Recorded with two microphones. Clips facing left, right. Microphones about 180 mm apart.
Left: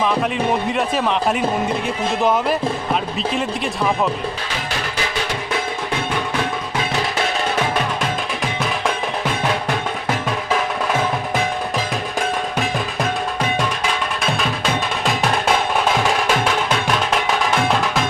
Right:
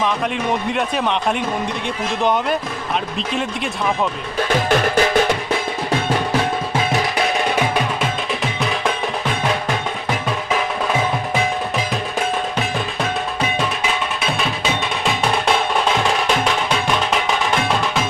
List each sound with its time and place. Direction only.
0.0 s a man's voice: centre (ahead or behind)
4.4 s music: 50° right (ahead or behind)
13.6 s music: 5° right (ahead or behind)